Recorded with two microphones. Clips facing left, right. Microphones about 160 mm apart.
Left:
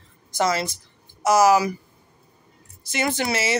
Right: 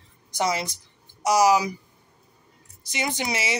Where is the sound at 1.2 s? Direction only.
50° left (ahead or behind).